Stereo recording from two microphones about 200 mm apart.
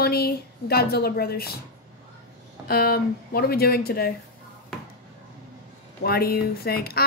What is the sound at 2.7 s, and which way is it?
Speech, 50° left (ahead or behind).